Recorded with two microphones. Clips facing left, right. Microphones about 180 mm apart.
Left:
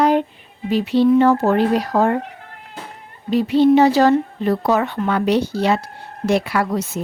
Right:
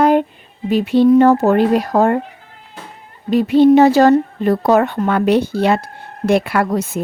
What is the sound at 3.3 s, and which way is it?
A woman's voice, 50° right (ahead or behind).